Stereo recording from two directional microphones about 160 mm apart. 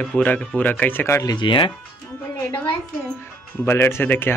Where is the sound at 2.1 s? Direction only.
15° left (ahead or behind).